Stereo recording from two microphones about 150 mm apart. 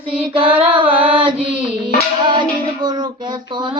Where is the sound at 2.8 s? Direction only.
30° right (ahead or behind).